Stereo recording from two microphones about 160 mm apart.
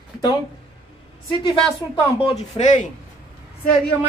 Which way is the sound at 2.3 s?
45° left (ahead or behind).